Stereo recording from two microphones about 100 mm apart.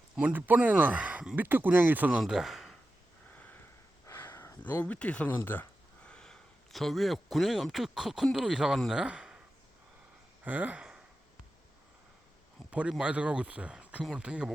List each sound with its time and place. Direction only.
0.2 s speech: 15° right (ahead or behind)
2.2 s speech: 5° right (ahead or behind)
3.3 s sniff: 15° left (ahead or behind)
4.0 s a sound: 25° left (ahead or behind)
5.4 s speech: 20° left (ahead or behind); by 9.4 s 10° right (ahead or behind)
10.4 s speech: 15° right (ahead or behind)
12.7 s speech: 10° right (ahead or behind)